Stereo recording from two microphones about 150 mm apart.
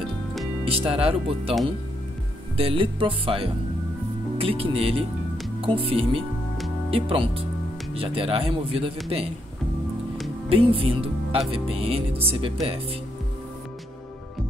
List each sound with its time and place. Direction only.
0.7 s speech: 40° right (ahead or behind)
2.5 s speech: 40° right (ahead or behind)
10.5 s speech: 40° right (ahead or behind)